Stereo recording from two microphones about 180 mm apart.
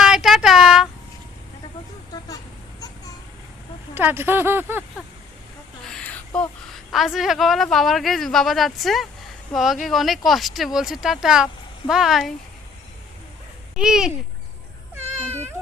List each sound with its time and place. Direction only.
0.0 s a sound: centre (ahead or behind)
3.9 s speech: 10° right (ahead or behind)
5.8 s a woman's voice: 5° left (ahead or behind)
13.7 s speech: 5° right (ahead or behind)
15.0 s cat: 40° right (ahead or behind)